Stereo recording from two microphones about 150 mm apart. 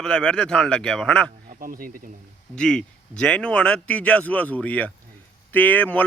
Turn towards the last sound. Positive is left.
turn(degrees=10)  # may be behind; listen again after turning